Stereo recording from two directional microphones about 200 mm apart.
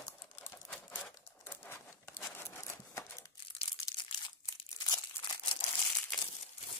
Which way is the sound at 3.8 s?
25° left (ahead or behind).